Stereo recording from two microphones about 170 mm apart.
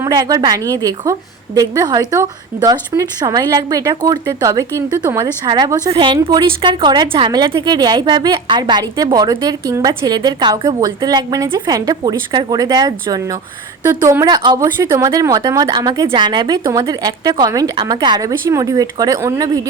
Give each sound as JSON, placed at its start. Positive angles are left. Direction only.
{"t": 0.0, "sound": "a woman's voice", "side_deg": -20}